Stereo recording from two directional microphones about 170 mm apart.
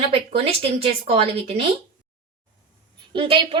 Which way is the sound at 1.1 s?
35° right (ahead or behind).